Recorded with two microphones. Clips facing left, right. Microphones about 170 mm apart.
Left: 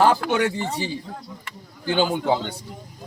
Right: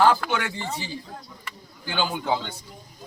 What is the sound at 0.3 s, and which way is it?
Speech, 35° left (ahead or behind).